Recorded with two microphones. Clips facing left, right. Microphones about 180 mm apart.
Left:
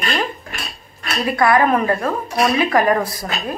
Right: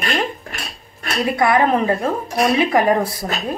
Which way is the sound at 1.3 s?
20° right (ahead or behind).